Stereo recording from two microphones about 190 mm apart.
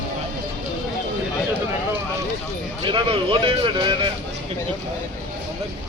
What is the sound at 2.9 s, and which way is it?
Speech, 25° right (ahead or behind).